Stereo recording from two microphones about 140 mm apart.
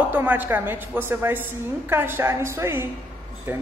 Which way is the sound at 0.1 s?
15° right (ahead or behind).